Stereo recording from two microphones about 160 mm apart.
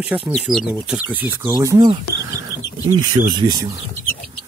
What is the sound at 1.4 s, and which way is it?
Speech, 20° right (ahead or behind).